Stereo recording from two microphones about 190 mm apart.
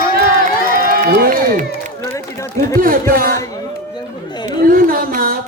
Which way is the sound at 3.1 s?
50° right (ahead or behind).